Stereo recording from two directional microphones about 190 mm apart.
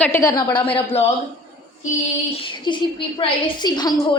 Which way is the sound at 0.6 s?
30° left (ahead or behind).